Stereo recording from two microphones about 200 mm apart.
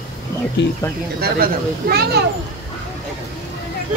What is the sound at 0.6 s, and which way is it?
Speech, 60° left (ahead or behind).